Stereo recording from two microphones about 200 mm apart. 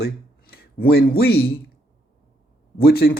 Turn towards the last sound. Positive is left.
turn(degrees=50)  # may be behind; listen again after turning